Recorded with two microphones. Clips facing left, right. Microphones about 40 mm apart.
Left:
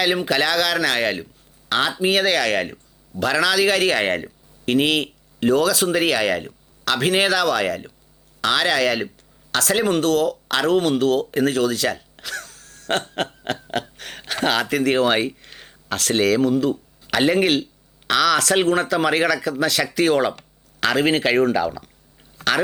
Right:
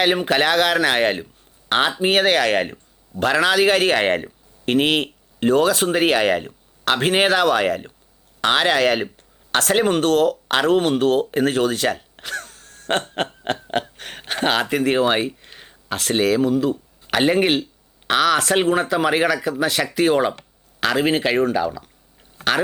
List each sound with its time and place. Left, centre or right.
0.0 s speech: right
2.4 s speech: right
12.2 s a sound: right
13.5 s speech: right; by 16.8 s centre
17.1 s speech: centre
22.4 s a sound: centre